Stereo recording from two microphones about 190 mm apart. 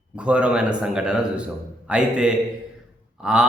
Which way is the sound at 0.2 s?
5° right (ahead or behind).